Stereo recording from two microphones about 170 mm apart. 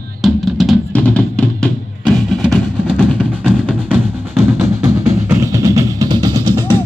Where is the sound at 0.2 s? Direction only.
Centre (ahead or behind); by 6.6 s 25° right (ahead or behind).